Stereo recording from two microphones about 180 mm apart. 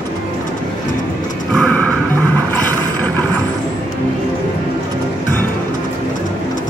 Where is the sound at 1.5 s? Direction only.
5° left (ahead or behind).